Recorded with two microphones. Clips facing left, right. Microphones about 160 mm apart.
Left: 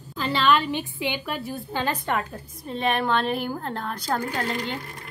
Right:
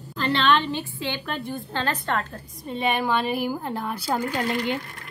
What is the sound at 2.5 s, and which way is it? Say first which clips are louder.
A woman's voice: even; centre (ahead or behind).